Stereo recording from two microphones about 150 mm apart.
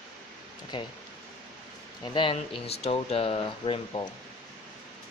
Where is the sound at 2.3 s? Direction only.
40° left (ahead or behind).